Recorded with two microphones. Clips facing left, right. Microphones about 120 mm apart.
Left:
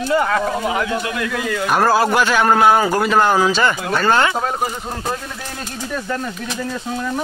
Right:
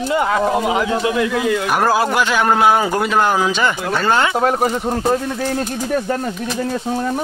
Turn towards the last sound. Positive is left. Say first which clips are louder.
# right 5 dB
turn(degrees=-40)  # may be behind; listen again after turning